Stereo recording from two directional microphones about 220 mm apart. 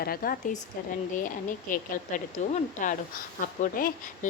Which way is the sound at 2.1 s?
35° left (ahead or behind).